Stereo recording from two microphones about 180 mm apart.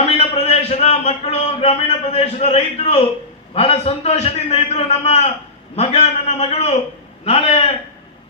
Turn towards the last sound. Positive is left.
turn(degrees=35)  # may be behind; listen again after turning